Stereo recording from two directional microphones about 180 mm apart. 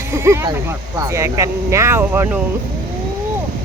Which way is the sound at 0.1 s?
15° right (ahead or behind).